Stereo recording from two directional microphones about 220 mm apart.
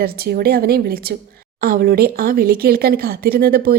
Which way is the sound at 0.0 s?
45° right (ahead or behind).